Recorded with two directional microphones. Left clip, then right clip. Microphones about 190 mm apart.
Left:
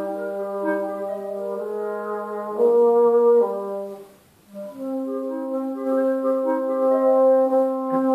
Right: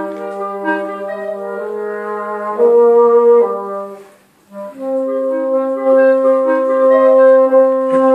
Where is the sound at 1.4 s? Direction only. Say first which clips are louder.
Right 5 dB; 30° right (ahead or behind).